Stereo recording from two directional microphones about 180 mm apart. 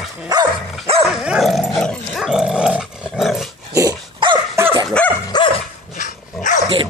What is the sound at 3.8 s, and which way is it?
Dog, 25° right (ahead or behind).